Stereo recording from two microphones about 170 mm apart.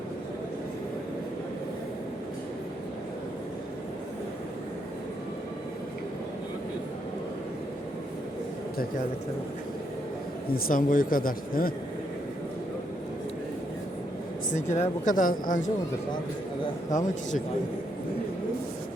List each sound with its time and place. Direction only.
10.5 s speech: 55° left (ahead or behind)
14.5 s speech: 45° left (ahead or behind)